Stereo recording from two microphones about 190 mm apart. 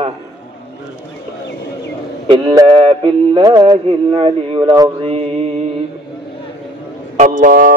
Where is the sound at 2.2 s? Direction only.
25° right (ahead or behind).